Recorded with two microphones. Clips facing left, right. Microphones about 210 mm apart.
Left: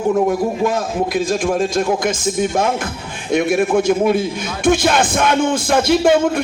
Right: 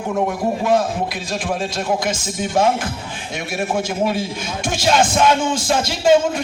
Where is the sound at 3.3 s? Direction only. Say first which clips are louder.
Left 8 dB; 55° left (ahead or behind).